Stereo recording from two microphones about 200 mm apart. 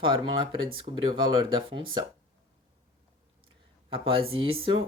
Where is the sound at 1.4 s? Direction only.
25° right (ahead or behind).